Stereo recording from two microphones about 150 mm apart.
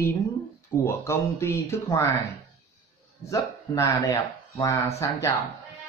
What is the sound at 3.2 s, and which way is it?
Speech, 20° left (ahead or behind).